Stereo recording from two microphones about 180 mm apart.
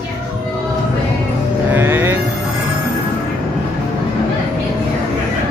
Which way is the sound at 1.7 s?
10° right (ahead or behind).